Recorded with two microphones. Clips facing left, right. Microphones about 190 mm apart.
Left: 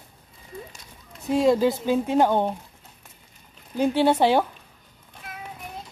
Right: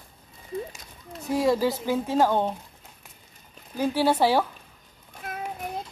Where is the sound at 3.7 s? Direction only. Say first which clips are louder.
Left 3 dB; 20° left (ahead or behind).